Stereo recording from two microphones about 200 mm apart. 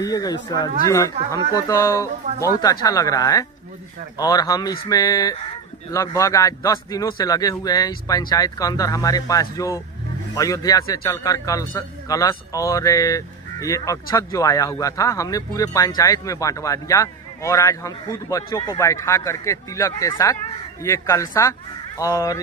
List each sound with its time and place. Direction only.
0.0 s speech: 20° left (ahead or behind)